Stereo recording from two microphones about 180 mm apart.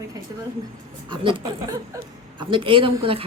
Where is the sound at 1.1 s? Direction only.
25° right (ahead or behind).